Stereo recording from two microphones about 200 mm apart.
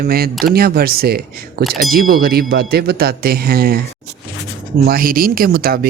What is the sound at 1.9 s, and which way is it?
Speech, 50° right (ahead or behind).